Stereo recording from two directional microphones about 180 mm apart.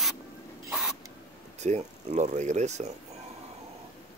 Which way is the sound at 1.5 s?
40° right (ahead or behind).